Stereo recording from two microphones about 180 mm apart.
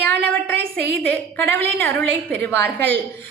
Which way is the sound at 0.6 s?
60° right (ahead or behind).